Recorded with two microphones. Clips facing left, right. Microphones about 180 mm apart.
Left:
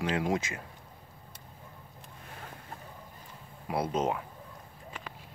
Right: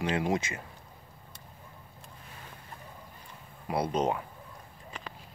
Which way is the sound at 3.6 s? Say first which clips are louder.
Right 1 dB; 5° left (ahead or behind).